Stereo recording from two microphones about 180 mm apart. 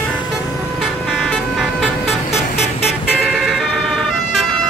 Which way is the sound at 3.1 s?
Centre (ahead or behind).